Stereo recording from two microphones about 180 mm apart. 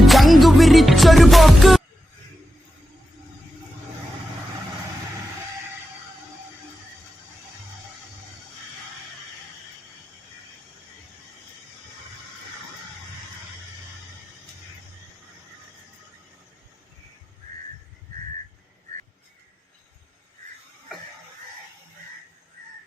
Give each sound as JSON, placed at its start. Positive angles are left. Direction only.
{"t": 0.0, "sound": "music", "side_deg": 0}